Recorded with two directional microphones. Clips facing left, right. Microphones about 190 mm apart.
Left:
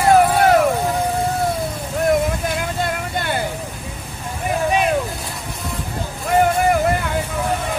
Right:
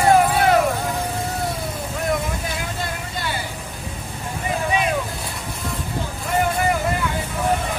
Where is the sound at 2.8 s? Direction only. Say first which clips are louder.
Left 5 dB; 55° left (ahead or behind).